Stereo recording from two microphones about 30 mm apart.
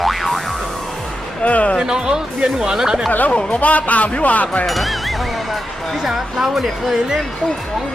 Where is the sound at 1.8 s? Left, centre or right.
Right.